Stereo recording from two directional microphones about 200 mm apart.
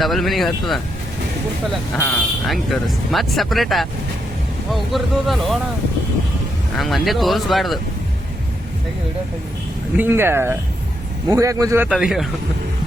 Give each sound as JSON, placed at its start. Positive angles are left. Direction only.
{"t": 0.0, "sound": "speech", "side_deg": 0}
{"t": 2.0, "sound": "speech", "side_deg": 5}
{"t": 6.7, "sound": "speech", "side_deg": 0}
{"t": 10.0, "sound": "speech", "side_deg": -10}
{"t": 11.9, "sound": "speech", "side_deg": 0}